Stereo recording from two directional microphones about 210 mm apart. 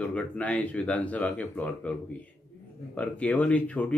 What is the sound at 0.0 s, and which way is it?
Speech, 5° left (ahead or behind).